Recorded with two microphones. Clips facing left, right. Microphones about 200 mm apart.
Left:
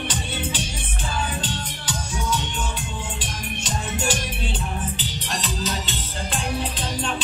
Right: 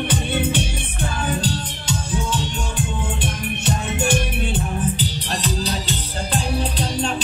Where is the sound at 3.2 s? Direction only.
60° right (ahead or behind).